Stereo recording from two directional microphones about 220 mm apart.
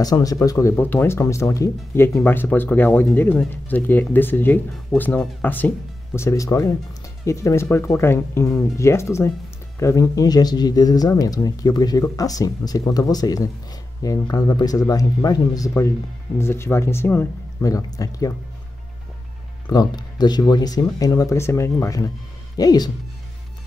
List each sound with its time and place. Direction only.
0.0 s speech: 15° left (ahead or behind)
19.7 s speech: 20° left (ahead or behind)